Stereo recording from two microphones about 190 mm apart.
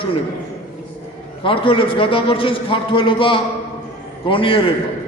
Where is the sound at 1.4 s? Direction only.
30° left (ahead or behind).